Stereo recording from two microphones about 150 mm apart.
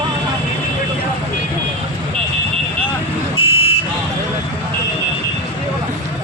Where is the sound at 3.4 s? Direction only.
40° left (ahead or behind).